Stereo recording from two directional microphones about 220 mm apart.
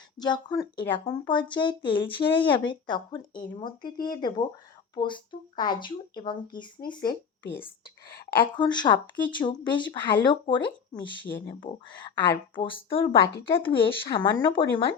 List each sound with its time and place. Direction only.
0.2 s speech: 20° left (ahead or behind)